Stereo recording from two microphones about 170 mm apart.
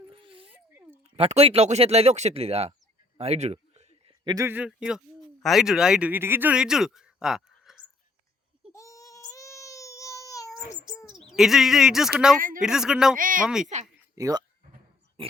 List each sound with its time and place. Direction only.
0.1 s a sound: 30° right (ahead or behind)
0.5 s a sound: 10° right (ahead or behind)
1.1 s speech: 35° right (ahead or behind)
3.2 s a sound: 40° right (ahead or behind)
4.2 s speech: 25° right (ahead or behind)
4.4 s a man's voice: 10° right (ahead or behind)
8.7 s baby cry: 20° left (ahead or behind)
11.3 s speech: centre (ahead or behind)
12.4 s speech: 55° right (ahead or behind)
12.6 s speech: 5° right (ahead or behind)
13.1 s speech: 55° right (ahead or behind)
13.4 s speech: 5° right (ahead or behind)
14.2 s speech: 20° right (ahead or behind)